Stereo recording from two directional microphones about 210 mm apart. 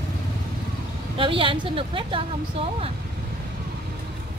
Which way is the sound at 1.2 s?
25° right (ahead or behind).